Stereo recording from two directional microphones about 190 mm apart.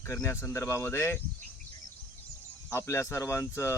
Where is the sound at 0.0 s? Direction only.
15° left (ahead or behind).